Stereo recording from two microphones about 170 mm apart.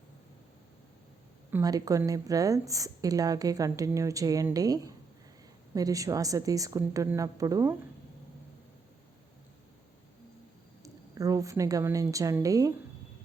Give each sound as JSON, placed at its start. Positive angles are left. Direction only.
{"t": 1.5, "sound": "a woman's voice", "side_deg": -15}
{"t": 10.8, "sound": "a woman's voice", "side_deg": -20}